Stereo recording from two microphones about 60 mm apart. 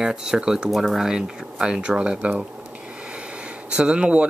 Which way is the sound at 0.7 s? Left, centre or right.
Centre.